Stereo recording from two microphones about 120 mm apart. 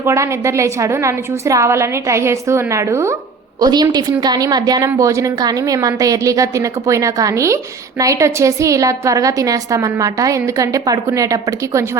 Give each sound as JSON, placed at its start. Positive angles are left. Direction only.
{"t": 0.0, "sound": "a woman's voice", "side_deg": -25}
{"t": 3.6, "sound": "a woman's voice", "side_deg": -35}